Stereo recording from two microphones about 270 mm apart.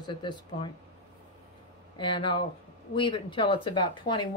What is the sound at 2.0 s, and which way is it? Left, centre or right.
Speech, centre.